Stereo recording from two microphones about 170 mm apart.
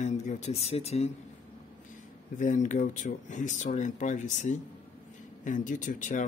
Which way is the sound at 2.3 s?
45° left (ahead or behind).